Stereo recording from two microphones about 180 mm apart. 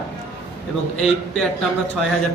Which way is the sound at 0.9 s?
5° left (ahead or behind).